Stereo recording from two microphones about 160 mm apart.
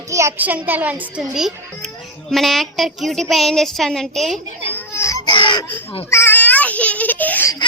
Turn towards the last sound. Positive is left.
turn(degrees=10)  # may be behind; listen again after turning